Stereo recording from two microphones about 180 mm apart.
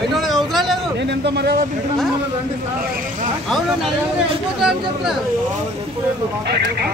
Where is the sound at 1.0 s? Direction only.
70° right (ahead or behind).